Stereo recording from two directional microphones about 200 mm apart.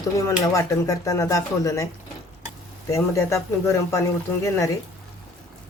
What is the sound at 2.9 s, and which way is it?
Speech, 15° left (ahead or behind).